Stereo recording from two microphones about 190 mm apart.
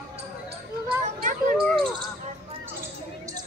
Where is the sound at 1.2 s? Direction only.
45° right (ahead or behind).